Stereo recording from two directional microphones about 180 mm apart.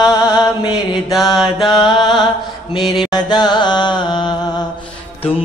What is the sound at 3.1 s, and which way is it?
Mantra, 25° left (ahead or behind).